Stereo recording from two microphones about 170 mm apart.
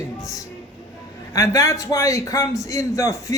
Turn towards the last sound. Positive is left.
turn(degrees=20)  # may be behind; listen again after turning